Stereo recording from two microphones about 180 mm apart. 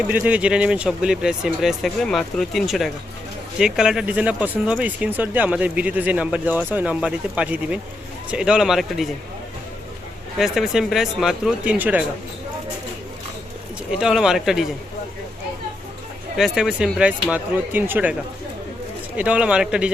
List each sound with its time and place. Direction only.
0.1 s speech: 10° right (ahead or behind)
10.3 s speech: centre (ahead or behind)
14.0 s speech: centre (ahead or behind)
16.4 s speech: 5° right (ahead or behind)